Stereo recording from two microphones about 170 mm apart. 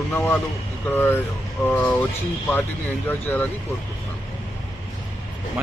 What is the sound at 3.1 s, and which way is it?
Speech, 10° left (ahead or behind).